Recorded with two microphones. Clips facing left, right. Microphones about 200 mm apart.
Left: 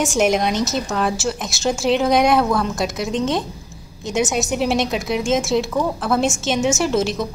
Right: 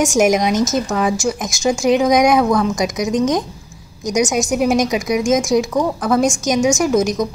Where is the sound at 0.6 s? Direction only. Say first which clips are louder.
Right 4 dB; 45° right (ahead or behind).